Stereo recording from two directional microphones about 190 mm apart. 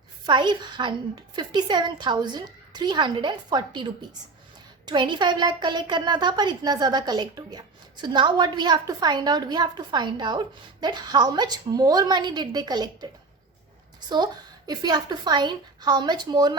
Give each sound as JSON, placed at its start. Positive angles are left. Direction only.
{"t": 0.3, "sound": "a woman's voice", "side_deg": -25}
{"t": 14.7, "sound": "a woman's voice", "side_deg": -20}